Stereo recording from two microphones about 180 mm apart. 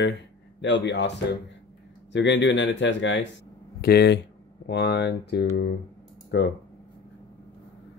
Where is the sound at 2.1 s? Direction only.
85° left.